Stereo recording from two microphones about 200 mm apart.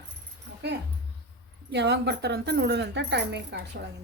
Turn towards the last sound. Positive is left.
turn(degrees=-60)  # may be behind; listen again after turning